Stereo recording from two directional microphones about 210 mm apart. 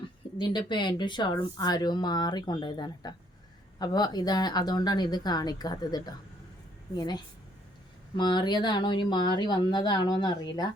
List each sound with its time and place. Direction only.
0.3 s speech: 20° left (ahead or behind)